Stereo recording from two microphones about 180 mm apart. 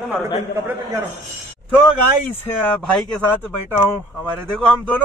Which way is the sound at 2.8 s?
Centre (ahead or behind).